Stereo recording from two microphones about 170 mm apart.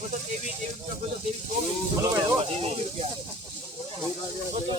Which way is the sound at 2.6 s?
35° right (ahead or behind).